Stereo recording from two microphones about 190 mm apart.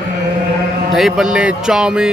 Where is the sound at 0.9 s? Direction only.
Centre (ahead or behind).